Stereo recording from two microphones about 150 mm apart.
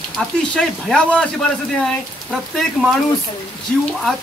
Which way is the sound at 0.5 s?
5° left (ahead or behind).